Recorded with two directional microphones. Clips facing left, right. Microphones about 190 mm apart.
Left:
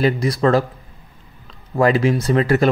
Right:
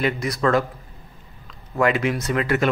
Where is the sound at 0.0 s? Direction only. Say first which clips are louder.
Left 5 dB; 30° left (ahead or behind).